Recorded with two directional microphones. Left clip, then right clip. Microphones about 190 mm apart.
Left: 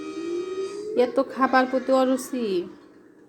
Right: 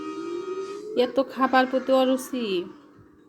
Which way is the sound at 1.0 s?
10° right (ahead or behind).